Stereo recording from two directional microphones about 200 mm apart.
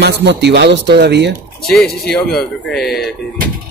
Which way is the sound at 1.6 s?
Centre (ahead or behind).